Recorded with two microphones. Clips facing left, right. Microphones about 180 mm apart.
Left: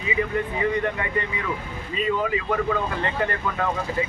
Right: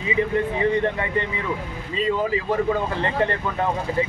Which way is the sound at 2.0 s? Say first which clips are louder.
Right 2 dB; 30° right (ahead or behind).